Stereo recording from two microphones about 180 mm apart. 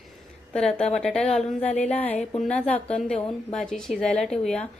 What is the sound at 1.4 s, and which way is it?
Speech, 40° left (ahead or behind).